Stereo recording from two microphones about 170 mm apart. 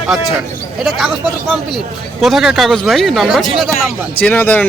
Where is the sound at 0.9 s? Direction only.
Centre (ahead or behind).